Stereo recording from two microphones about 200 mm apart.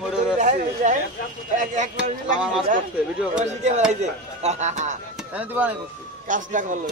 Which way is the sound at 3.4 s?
35° right (ahead or behind).